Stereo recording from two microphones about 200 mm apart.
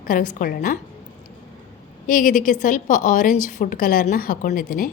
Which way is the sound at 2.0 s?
45° left (ahead or behind).